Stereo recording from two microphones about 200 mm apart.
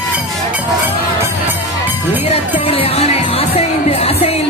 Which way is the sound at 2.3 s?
30° left (ahead or behind).